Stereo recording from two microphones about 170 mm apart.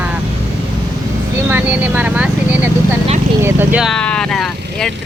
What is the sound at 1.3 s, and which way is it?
Speech, 10° right (ahead or behind).